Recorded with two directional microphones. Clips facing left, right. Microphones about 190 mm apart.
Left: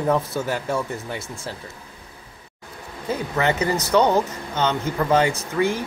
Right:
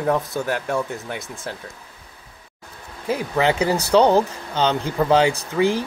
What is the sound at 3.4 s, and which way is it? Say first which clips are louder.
Speech: right 2 dB; 15° right (ahead or behind).